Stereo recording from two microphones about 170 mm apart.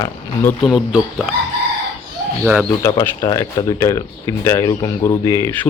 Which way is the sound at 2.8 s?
15° left (ahead or behind).